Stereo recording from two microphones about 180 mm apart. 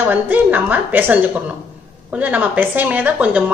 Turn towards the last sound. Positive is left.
turn(degrees=-10)  # may be behind; listen again after turning